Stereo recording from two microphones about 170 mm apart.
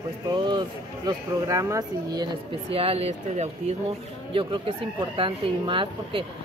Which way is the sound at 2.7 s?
35° right (ahead or behind).